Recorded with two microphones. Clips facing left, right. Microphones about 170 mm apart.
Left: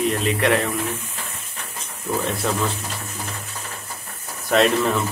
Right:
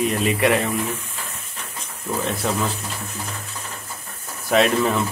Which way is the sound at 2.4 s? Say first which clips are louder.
Right 1 dB; centre (ahead or behind).